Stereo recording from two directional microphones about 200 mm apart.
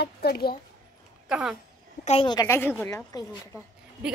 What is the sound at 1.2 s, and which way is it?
Speech, 5° right (ahead or behind).